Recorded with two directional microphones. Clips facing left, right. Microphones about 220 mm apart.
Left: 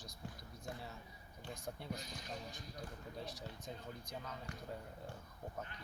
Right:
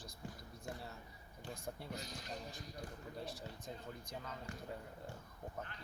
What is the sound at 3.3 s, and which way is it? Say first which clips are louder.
Speech: even; 30° right (ahead or behind).